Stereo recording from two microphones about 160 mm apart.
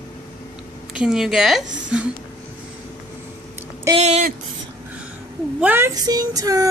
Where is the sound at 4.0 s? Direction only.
45° right (ahead or behind).